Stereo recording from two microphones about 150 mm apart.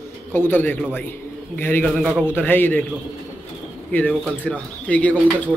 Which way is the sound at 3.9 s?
10° left (ahead or behind).